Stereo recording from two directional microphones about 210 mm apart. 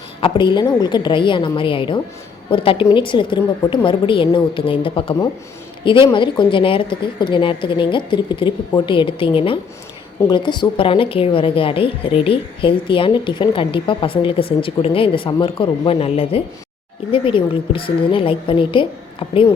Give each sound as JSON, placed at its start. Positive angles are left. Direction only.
{"t": 0.2, "sound": "a woman's voice", "side_deg": 25}